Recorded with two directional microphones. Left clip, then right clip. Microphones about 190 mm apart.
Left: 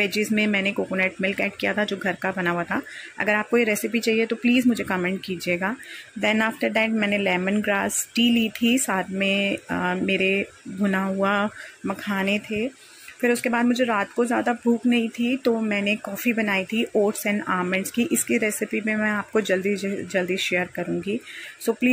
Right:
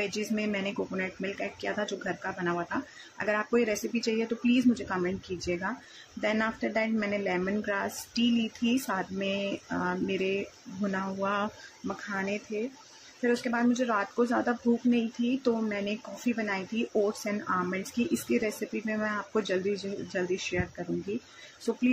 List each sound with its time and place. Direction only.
0.0 s speech: 20° left (ahead or behind)